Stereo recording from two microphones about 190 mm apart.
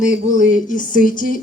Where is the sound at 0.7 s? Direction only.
45° left (ahead or behind).